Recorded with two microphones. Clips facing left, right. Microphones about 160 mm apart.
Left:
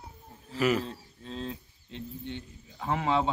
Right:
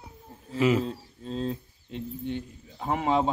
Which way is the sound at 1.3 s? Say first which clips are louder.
Right 6 dB; 40° right (ahead or behind).